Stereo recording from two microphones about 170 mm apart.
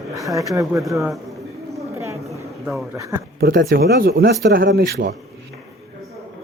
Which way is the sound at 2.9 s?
20° right (ahead or behind).